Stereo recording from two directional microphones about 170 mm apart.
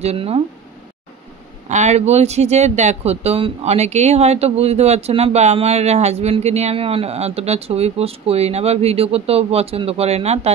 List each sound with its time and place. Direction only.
0.0 s speech: 35° right (ahead or behind)
1.7 s speech: 45° right (ahead or behind)